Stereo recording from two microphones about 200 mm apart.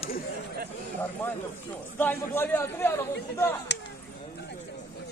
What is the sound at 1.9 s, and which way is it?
A man's voice, 10° left (ahead or behind).